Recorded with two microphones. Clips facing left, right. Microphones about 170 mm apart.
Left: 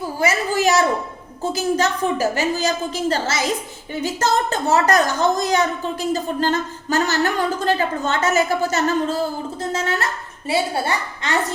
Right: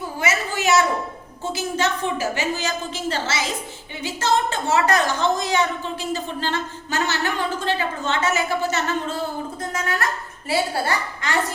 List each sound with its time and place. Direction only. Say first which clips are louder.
0.2 s a woman's voice: left 5 dB; 35° left (ahead or behind)
9.6 s a woman's voice: left 4 dB; 30° left (ahead or behind)